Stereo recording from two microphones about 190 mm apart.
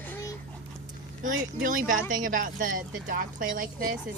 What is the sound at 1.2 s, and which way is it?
Speech, 45° right (ahead or behind).